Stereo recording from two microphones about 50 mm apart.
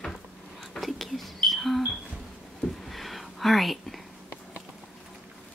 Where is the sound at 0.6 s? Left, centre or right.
Centre.